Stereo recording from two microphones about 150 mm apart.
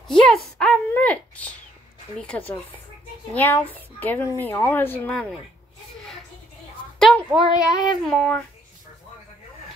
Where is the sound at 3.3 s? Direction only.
10° left (ahead or behind).